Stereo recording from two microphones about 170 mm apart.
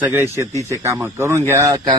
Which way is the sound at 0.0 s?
15° right (ahead or behind).